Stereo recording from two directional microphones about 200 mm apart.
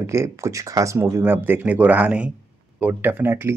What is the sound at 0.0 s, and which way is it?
Speech, 15° right (ahead or behind).